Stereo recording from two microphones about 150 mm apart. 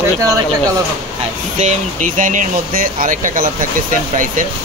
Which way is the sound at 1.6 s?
60° right (ahead or behind).